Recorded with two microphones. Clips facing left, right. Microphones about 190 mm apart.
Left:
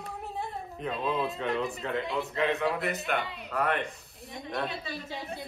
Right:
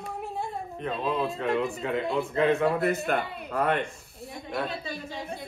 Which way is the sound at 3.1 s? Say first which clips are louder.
Even; 40° right (ahead or behind).